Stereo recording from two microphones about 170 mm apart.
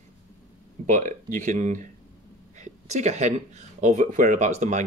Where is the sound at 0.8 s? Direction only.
50° right (ahead or behind).